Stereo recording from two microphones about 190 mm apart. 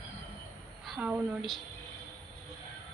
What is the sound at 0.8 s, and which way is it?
Speech, 5° right (ahead or behind).